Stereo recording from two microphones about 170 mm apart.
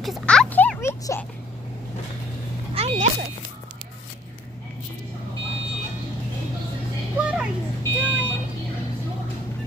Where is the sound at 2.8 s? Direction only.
35° right (ahead or behind).